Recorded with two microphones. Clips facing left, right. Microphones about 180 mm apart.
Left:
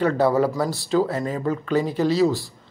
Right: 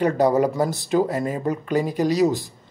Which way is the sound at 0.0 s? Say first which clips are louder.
Right 1 dB; 15° right (ahead or behind).